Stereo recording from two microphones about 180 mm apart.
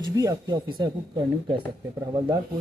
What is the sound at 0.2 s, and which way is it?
Speech, 25° right (ahead or behind).